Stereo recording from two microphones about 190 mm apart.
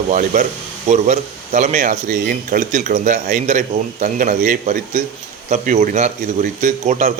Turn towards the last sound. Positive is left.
turn(degrees=-40)  # may be behind; listen again after turning